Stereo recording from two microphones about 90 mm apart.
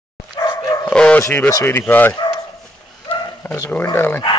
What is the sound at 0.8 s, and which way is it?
Speech, 15° left (ahead or behind).